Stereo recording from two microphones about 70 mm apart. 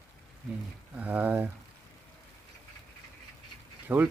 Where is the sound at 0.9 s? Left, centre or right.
Right.